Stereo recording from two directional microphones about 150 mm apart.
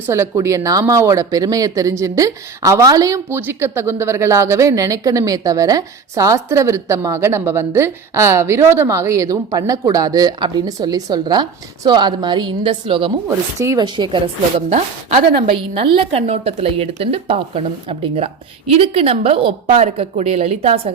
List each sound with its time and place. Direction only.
0.1 s speech: 20° right (ahead or behind); by 13.1 s 35° right (ahead or behind)
13.2 s speech: 20° right (ahead or behind)
14.7 s a woman's voice: 50° right (ahead or behind)
15.4 s a woman's voice: 35° right (ahead or behind)